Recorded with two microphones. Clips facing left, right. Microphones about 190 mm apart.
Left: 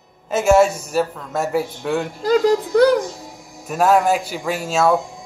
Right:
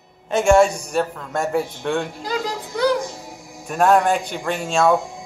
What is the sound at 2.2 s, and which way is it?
Speech, 50° left (ahead or behind).